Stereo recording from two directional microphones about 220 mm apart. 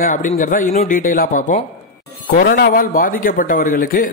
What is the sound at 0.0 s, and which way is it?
A man's voice, 35° left (ahead or behind).